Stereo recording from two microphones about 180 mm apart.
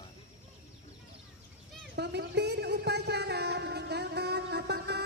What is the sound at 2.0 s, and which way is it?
Music, 70° right (ahead or behind).